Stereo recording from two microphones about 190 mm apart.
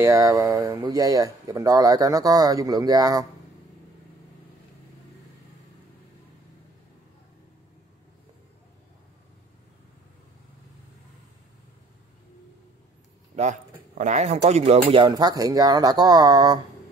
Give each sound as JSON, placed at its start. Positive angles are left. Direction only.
{"t": 0.0, "sound": "speech", "side_deg": -15}
{"t": 13.4, "sound": "speech", "side_deg": -40}